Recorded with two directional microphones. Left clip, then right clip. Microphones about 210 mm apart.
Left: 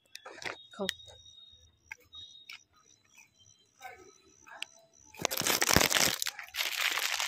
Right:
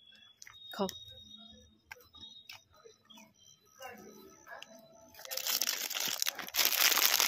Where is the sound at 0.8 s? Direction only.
10° right (ahead or behind).